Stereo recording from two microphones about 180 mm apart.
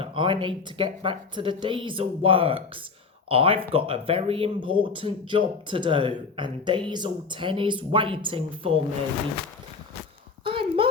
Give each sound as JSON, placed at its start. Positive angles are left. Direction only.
{"t": 0.0, "sound": "speech", "side_deg": -30}
{"t": 10.4, "sound": "clip-clop", "side_deg": -30}